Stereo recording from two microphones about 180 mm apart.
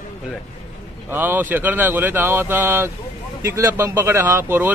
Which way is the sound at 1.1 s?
10° right (ahead or behind).